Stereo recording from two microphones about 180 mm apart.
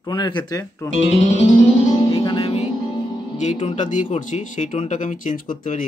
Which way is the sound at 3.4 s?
40° left (ahead or behind).